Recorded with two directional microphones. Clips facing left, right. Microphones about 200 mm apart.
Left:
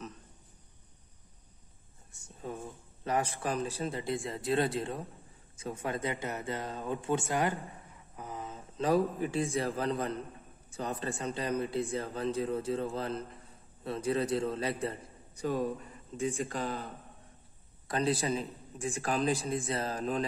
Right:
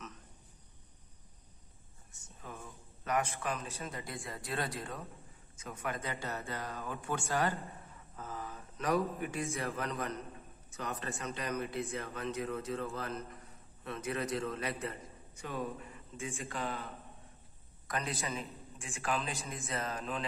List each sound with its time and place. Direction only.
2.4 s a man's voice: 30° left (ahead or behind)